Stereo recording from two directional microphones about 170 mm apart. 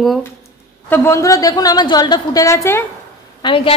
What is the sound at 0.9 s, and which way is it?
A woman's voice, 15° left (ahead or behind).